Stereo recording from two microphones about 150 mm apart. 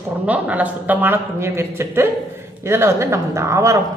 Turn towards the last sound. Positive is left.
turn(degrees=-20)  # may be behind; listen again after turning